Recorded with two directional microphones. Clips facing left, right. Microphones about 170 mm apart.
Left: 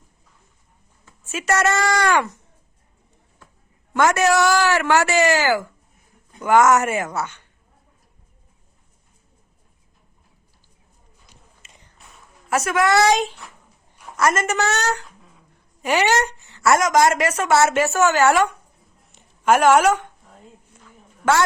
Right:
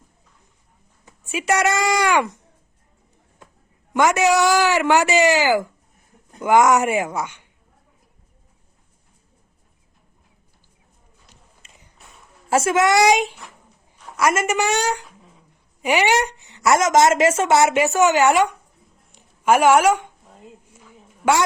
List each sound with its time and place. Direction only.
1.0 s speech: 15° right (ahead or behind)
3.9 s a woman's voice: 15° right (ahead or behind)
12.5 s a child's voice: 25° right (ahead or behind)
19.5 s a sound: 10° right (ahead or behind)